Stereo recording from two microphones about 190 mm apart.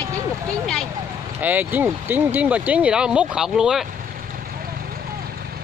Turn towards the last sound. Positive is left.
turn(degrees=-5)  # may be behind; listen again after turning